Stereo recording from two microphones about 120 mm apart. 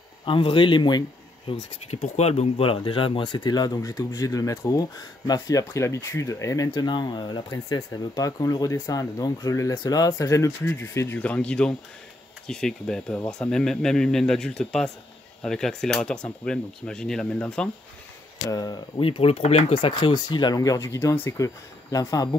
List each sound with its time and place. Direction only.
0.2 s speech: 45° left (ahead or behind)
1.9 s speech: 60° left (ahead or behind); by 17.6 s 10° left (ahead or behind)
18.5 s speech: 35° left (ahead or behind)
18.9 s speech: 50° left (ahead or behind); by 22.3 s 30° left (ahead or behind)